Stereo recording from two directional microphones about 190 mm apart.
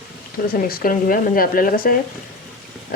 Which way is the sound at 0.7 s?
50° left (ahead or behind).